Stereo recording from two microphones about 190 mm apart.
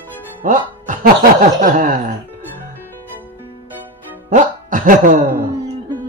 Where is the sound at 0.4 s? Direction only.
45° right (ahead or behind).